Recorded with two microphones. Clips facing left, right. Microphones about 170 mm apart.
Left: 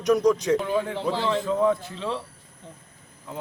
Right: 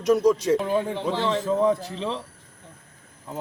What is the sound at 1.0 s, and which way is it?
Speech, 20° right (ahead or behind).